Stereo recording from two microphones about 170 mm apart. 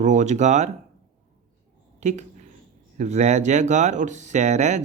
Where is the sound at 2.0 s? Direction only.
45° right (ahead or behind).